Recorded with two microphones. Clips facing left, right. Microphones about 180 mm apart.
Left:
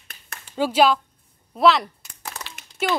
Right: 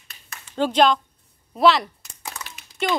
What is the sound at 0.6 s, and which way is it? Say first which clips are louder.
A child's voice: even; 5° left (ahead or behind).